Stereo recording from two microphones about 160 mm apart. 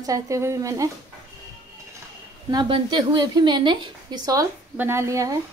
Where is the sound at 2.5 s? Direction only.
30° right (ahead or behind).